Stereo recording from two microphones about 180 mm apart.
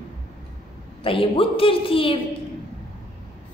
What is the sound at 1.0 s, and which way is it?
A woman's voice, 30° left (ahead or behind).